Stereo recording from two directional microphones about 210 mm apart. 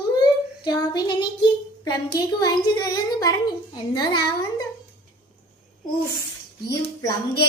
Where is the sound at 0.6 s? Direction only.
20° left (ahead or behind).